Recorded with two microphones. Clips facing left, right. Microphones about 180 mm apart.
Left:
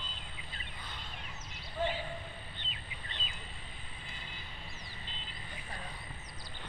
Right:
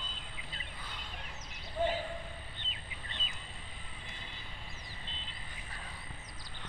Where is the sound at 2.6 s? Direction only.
45° right (ahead or behind).